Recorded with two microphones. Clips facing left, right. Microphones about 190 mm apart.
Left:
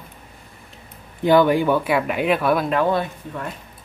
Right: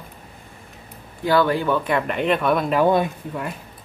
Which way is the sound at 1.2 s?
15° left (ahead or behind).